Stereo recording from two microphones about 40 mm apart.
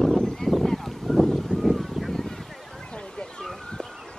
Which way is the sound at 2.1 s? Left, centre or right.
Centre.